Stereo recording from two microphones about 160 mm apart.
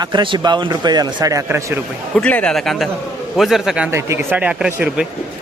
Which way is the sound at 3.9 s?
15° right (ahead or behind).